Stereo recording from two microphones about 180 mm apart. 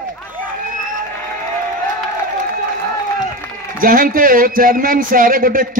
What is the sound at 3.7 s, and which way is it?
Speech, 50° right (ahead or behind).